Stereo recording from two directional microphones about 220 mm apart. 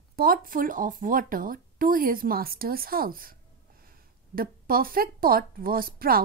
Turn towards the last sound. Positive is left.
turn(degrees=-40)  # may be behind; listen again after turning